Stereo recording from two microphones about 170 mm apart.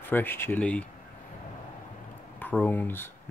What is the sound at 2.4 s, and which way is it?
Speech, 10° left (ahead or behind).